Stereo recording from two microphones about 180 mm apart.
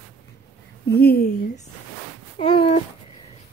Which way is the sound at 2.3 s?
30° left (ahead or behind).